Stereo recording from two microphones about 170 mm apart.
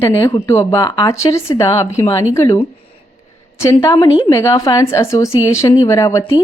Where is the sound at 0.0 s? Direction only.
15° left (ahead or behind).